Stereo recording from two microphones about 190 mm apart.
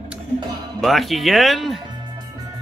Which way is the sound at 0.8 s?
Centre (ahead or behind).